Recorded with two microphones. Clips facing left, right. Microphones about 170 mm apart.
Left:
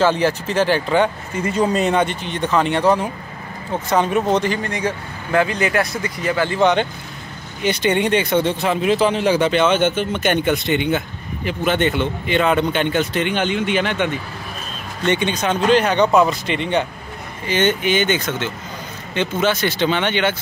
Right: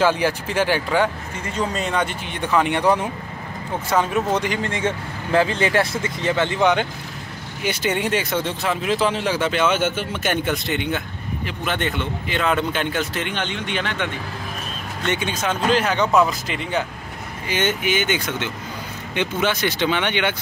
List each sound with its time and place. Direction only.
0.0 s speech: 10° right (ahead or behind)
1.5 s speech: 10° left (ahead or behind)
2.0 s speech: 10° right (ahead or behind)
3.9 s speech: 5° right (ahead or behind)
4.5 s speech: 25° right (ahead or behind)
6.6 s speech: 10° right (ahead or behind)
15.0 s speech: 5° right (ahead or behind)